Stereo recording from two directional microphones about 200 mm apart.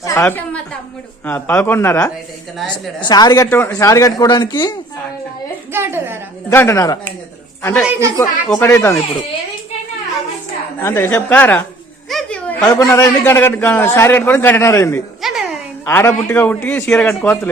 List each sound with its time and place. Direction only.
0.0 s a woman's voice: 15° left (ahead or behind)
2.6 s a woman's voice: centre (ahead or behind)
3.0 s speech: 20° left (ahead or behind)
5.7 s a woman's voice: 10° right (ahead or behind)
6.5 s a man's voice: 10° left (ahead or behind)
7.9 s a woman's voice: 15° right (ahead or behind)
8.4 s a man's voice: 10° left (ahead or behind)
10.8 s a man's voice: 15° left (ahead or behind)
12.0 s a sound: 5° left (ahead or behind)
12.8 s a man's voice: 10° left (ahead or behind)
15.2 s music: centre (ahead or behind)
15.9 s a man's voice: 10° left (ahead or behind)